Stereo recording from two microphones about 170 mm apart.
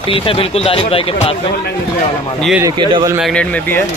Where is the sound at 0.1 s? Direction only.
35° left (ahead or behind).